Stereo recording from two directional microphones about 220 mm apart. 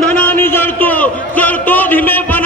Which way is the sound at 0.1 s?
10° left (ahead or behind).